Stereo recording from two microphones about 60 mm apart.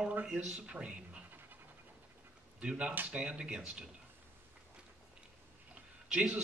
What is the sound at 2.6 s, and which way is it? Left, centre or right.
Speech, centre.